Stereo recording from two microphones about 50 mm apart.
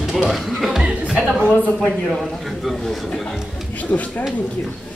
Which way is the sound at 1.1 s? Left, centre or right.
Centre.